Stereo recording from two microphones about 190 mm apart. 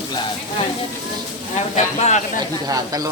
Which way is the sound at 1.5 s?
35° left (ahead or behind).